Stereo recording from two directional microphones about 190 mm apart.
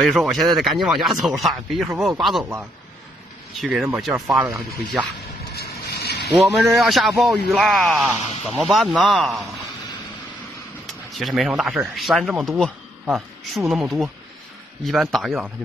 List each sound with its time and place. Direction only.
0.0 s speech: centre (ahead or behind)
3.5 s speech: centre (ahead or behind)
5.5 s vehicle: 55° left (ahead or behind)
6.3 s speech: centre (ahead or behind)
11.1 s speech: centre (ahead or behind)